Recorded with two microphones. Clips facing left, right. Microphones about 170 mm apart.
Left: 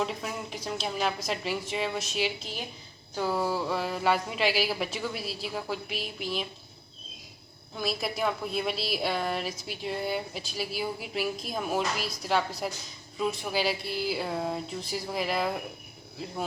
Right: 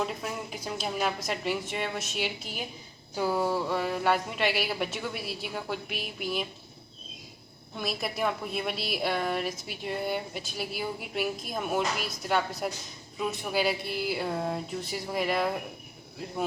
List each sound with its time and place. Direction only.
0.0 s a woman's voice: centre (ahead or behind)
7.8 s a woman's voice: centre (ahead or behind)